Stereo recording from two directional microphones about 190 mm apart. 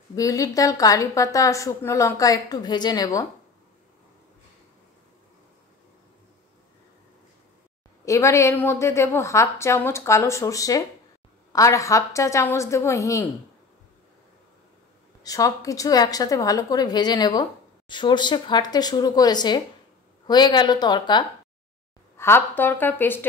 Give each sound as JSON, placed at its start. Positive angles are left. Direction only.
{"t": 0.1, "sound": "a woman's voice", "side_deg": 20}
{"t": 8.0, "sound": "a woman's voice", "side_deg": 15}
{"t": 15.2, "sound": "a woman's voice", "side_deg": 15}
{"t": 22.1, "sound": "a woman's voice", "side_deg": 15}